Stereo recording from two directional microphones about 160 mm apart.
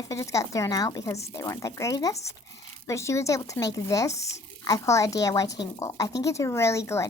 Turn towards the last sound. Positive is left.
turn(degrees=15)  # may be behind; listen again after turning